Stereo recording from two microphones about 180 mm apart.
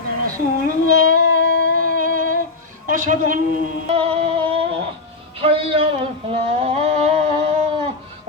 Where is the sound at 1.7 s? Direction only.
50° right (ahead or behind).